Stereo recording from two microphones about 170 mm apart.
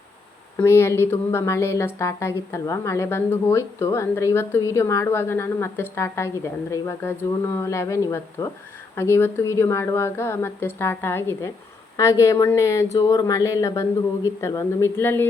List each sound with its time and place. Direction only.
0.6 s speech: 15° left (ahead or behind)